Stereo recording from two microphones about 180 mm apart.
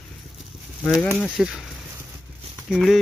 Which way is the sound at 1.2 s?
Centre (ahead or behind).